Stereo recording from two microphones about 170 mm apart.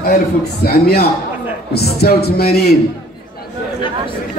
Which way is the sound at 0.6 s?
70° left (ahead or behind).